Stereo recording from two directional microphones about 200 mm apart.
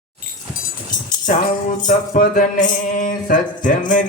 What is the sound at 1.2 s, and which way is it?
Music, 40° left (ahead or behind).